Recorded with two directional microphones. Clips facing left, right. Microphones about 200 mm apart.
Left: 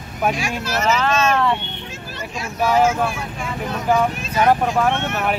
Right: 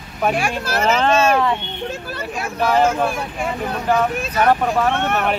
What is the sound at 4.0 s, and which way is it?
Speech, 10° left (ahead or behind).